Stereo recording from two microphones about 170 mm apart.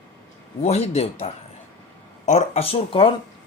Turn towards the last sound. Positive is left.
turn(degrees=35)  # may be behind; listen again after turning